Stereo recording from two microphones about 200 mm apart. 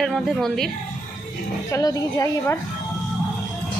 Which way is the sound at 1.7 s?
20° left (ahead or behind).